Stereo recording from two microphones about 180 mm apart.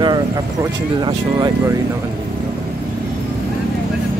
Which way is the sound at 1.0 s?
25° right (ahead or behind).